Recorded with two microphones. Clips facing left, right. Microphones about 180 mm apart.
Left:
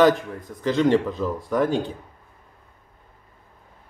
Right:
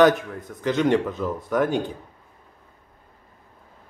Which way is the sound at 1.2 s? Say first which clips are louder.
Left 1 dB; 5° right (ahead or behind).